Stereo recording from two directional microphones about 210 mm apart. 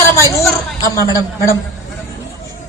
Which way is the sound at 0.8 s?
15° left (ahead or behind).